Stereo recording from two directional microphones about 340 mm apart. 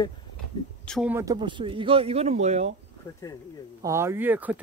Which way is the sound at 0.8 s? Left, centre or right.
Centre.